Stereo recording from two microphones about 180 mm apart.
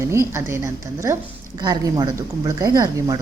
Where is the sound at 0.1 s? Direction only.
15° right (ahead or behind).